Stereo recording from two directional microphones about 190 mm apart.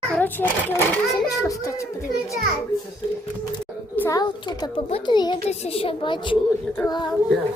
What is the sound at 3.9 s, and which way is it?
A child's voice, 15° left (ahead or behind).